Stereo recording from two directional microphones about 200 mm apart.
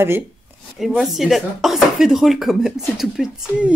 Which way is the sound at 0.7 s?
Centre (ahead or behind).